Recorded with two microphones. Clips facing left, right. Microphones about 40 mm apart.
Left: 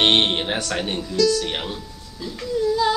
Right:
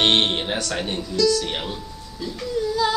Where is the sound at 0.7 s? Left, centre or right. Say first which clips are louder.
Left 1 dB; centre.